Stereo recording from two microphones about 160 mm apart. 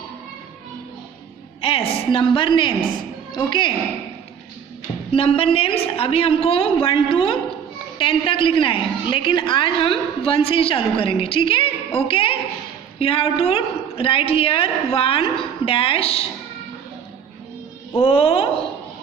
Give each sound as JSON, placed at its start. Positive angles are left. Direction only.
{"t": 1.6, "sound": "a woman's voice", "side_deg": 35}
{"t": 5.1, "sound": "a woman's voice", "side_deg": 35}
{"t": 17.9, "sound": "a woman's voice", "side_deg": 35}